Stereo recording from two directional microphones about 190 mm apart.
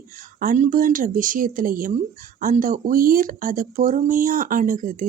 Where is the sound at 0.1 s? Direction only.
45° right (ahead or behind).